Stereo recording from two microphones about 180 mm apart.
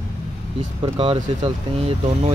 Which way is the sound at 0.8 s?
30° right (ahead or behind).